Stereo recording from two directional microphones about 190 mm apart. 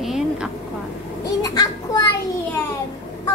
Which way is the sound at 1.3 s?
20° left (ahead or behind).